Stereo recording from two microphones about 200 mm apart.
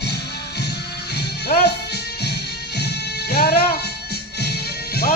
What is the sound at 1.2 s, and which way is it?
Music, 55° left (ahead or behind).